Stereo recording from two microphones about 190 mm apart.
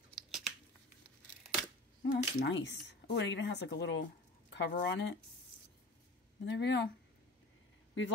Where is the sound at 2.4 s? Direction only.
70° left (ahead or behind).